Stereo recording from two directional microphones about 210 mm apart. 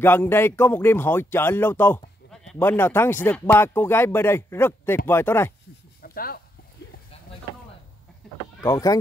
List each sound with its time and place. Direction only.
0.0 s speech: 10° left (ahead or behind)
6.0 s a sound: 45° left (ahead or behind)
8.6 s speech: 15° left (ahead or behind)